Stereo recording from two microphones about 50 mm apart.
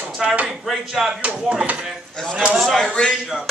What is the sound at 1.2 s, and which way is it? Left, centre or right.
Speech, right.